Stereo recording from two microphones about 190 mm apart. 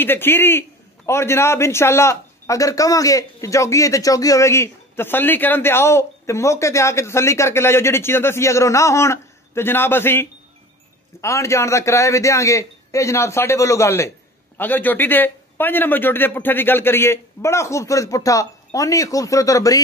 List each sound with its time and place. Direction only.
0.0 s a man's voice: 10° left (ahead or behind)